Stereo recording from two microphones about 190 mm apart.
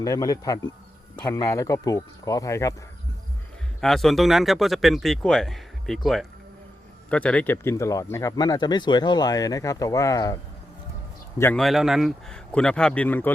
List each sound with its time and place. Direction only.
0.0 s speech: 20° left (ahead or behind)
3.8 s speech: centre (ahead or behind); by 10.3 s 20° left (ahead or behind)
11.5 s speech: centre (ahead or behind)